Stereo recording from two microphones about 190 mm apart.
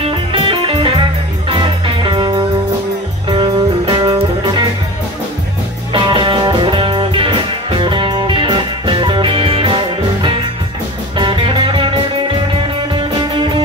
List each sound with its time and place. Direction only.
0.0 s music: 25° right (ahead or behind)
5.9 s music: 25° right (ahead or behind)